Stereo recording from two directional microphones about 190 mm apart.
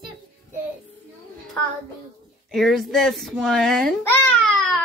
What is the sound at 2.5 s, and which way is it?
A child's voice, centre (ahead or behind).